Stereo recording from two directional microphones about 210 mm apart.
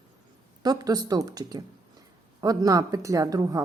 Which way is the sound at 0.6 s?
20° right (ahead or behind).